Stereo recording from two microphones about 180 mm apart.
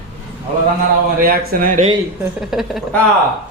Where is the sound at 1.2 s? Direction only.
55° right (ahead or behind).